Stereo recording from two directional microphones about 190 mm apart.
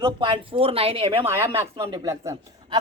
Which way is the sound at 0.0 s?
25° right (ahead or behind).